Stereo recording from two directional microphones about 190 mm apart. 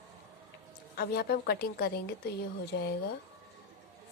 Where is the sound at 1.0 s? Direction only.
55° left (ahead or behind).